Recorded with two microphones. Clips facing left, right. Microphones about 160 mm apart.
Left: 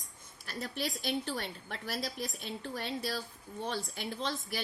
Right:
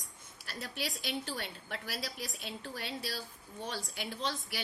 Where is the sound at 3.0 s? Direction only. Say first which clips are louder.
Left 4 dB; 50° left (ahead or behind).